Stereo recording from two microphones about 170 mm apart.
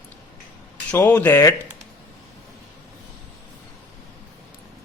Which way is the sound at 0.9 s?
10° left (ahead or behind).